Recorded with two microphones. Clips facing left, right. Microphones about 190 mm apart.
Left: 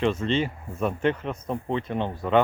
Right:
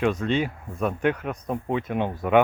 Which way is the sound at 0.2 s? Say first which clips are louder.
Right 1 dB; centre (ahead or behind).